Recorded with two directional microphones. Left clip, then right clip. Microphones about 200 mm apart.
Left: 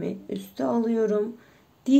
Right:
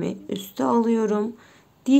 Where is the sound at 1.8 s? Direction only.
15° right (ahead or behind).